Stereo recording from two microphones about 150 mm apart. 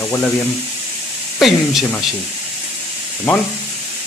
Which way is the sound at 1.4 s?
Centre (ahead or behind).